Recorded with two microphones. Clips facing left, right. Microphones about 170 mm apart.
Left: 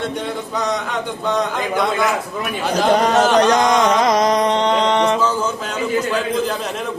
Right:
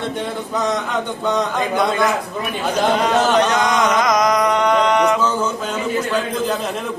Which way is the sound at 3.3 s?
35° left (ahead or behind).